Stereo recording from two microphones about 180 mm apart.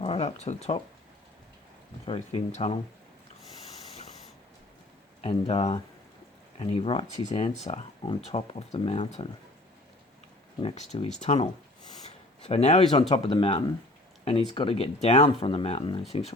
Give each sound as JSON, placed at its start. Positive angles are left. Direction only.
{"t": 0.0, "sound": "speech", "side_deg": 35}
{"t": 2.0, "sound": "speech", "side_deg": 35}
{"t": 5.2, "sound": "speech", "side_deg": 30}
{"t": 10.6, "sound": "speech", "side_deg": 30}
{"t": 12.0, "sound": "a sound", "side_deg": 35}
{"t": 12.9, "sound": "speech", "side_deg": 25}